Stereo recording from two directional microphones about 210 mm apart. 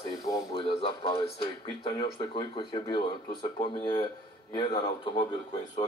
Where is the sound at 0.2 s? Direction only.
20° left (ahead or behind).